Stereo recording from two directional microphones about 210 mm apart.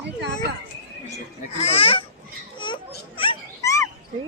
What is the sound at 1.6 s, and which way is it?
Speech, 30° left (ahead or behind).